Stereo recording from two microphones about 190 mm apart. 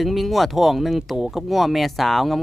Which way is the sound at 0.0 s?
Centre (ahead or behind).